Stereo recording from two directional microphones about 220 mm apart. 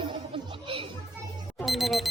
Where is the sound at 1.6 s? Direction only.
Centre (ahead or behind).